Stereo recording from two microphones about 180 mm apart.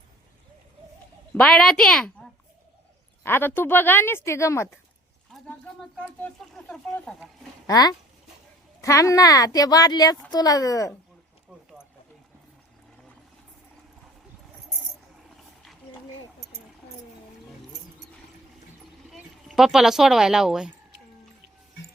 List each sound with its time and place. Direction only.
1.3 s speech: 5° left (ahead or behind)
3.2 s speech: 10° left (ahead or behind)
5.3 s a sound: centre (ahead or behind)
6.0 s speech: 10° left (ahead or behind)
7.7 s a woman's voice: 20° left (ahead or behind)
19.1 s speech: centre (ahead or behind)